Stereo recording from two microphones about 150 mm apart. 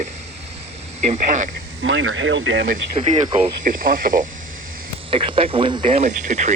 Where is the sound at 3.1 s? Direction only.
40° right (ahead or behind).